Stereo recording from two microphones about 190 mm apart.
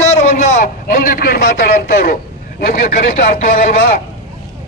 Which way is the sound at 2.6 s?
50° left (ahead or behind).